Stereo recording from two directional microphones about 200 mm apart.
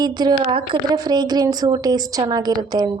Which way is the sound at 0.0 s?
20° right (ahead or behind).